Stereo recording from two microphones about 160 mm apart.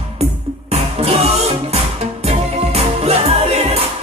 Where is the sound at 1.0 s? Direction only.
40° right (ahead or behind).